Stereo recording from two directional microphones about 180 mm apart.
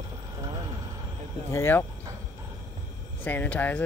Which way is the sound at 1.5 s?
15° left (ahead or behind).